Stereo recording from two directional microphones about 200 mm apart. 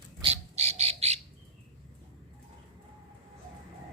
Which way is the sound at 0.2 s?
30° right (ahead or behind).